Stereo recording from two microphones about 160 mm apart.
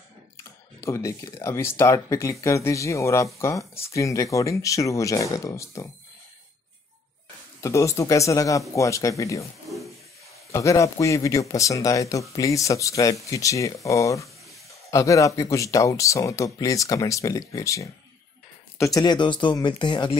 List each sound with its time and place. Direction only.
0.4 s speech: 20° left (ahead or behind)
7.6 s speech: 20° left (ahead or behind)
10.5 s speech: 20° left (ahead or behind)